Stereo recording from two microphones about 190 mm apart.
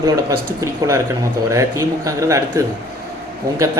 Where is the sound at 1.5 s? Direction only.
15° right (ahead or behind).